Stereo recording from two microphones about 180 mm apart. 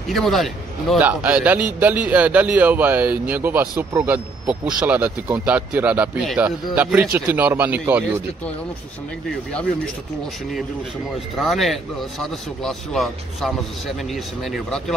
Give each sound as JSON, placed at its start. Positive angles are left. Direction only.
{"t": 0.1, "sound": "a man's voice", "side_deg": 0}
{"t": 11.3, "sound": "speech", "side_deg": 0}